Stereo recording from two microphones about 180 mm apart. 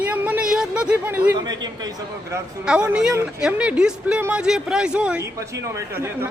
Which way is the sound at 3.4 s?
5° right (ahead or behind).